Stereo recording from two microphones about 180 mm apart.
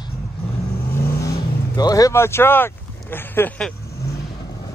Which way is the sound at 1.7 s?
20° left (ahead or behind).